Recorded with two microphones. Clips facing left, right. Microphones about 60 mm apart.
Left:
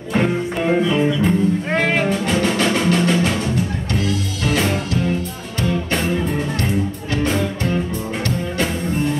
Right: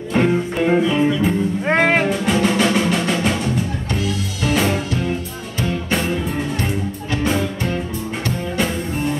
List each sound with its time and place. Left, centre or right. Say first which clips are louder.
0.1 s music: right 1 dB; centre
1.7 s music: right 7 dB; right
2.0 s music: right 1 dB; centre
4.5 s music: right 1 dB; centre
7.2 s music: right 1 dB; centre